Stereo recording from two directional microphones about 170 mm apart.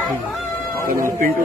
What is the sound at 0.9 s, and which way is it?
Speech, 55° right (ahead or behind).